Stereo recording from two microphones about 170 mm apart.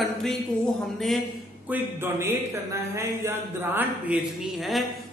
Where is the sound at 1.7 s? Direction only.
15° right (ahead or behind).